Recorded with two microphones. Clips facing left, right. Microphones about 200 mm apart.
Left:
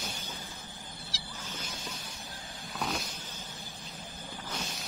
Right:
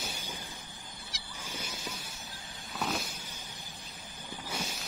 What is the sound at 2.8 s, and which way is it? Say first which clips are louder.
Vehicle: right 1 dB; 5° right (ahead or behind).